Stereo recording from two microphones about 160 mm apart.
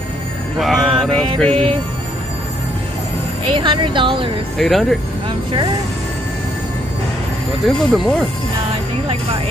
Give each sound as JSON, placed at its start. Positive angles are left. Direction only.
{"t": 0.6, "sound": "music", "side_deg": 0}
{"t": 1.4, "sound": "speech", "side_deg": 5}
{"t": 3.4, "sound": "speech", "side_deg": -30}
{"t": 4.6, "sound": "speech", "side_deg": 0}
{"t": 7.6, "sound": "speech", "side_deg": 0}